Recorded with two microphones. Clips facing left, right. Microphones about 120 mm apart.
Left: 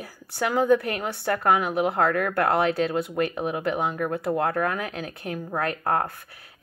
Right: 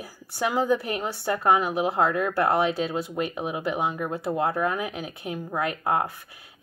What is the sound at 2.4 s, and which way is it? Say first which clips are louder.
Speech: left 1 dB; 5° right (ahead or behind).